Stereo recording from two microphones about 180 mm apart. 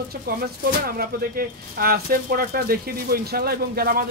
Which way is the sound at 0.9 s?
55° right (ahead or behind).